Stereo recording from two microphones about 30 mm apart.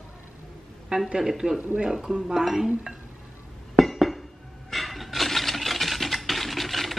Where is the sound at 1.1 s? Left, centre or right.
Centre.